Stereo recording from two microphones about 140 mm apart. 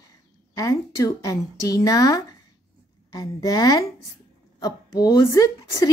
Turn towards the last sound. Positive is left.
turn(degrees=25)  # may be behind; listen again after turning